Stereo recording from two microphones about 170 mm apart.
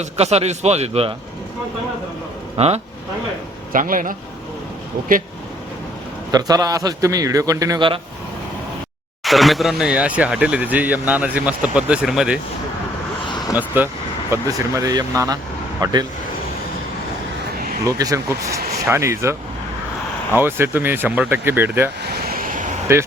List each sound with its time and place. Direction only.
0.0 s a man's voice: 40° right (ahead or behind)
2.6 s a man's voice: 40° right (ahead or behind)
3.7 s speech: 55° right (ahead or behind)
6.3 s speech: 20° right (ahead or behind)
9.2 s speech: centre (ahead or behind)
13.2 s vehicle: 25° left (ahead or behind)
13.6 s speech: 10° right (ahead or behind)
17.6 s a sound: 60° right (ahead or behind)
17.8 s speech: 20° right (ahead or behind)
22.0 s vehicle: 70° right (ahead or behind); by 22.7 s 50° right (ahead or behind)